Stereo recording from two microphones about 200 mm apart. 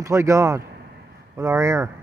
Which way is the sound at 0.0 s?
15° right (ahead or behind).